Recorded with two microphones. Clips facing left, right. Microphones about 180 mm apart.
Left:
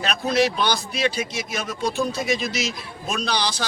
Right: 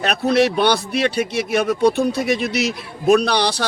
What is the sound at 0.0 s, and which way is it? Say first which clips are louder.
Speech: right 5 dB; 60° right (ahead or behind).